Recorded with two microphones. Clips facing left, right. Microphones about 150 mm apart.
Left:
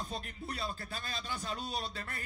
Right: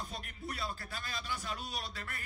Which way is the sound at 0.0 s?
30° left (ahead or behind).